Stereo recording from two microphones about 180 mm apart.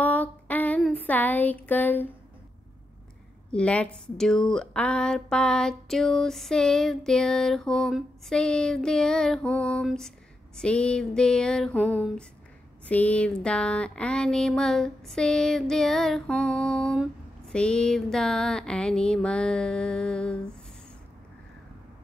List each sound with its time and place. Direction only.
0.0 s female singing: 10° left (ahead or behind)
0.8 s speech: 10° left (ahead or behind)
3.5 s speech: 5° left (ahead or behind)